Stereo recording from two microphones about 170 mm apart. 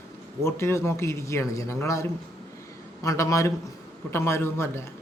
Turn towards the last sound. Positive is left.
turn(degrees=15)  # may be behind; listen again after turning